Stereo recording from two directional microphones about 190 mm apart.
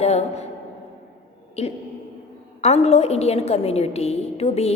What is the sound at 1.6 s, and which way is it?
A woman's voice, 35° left (ahead or behind).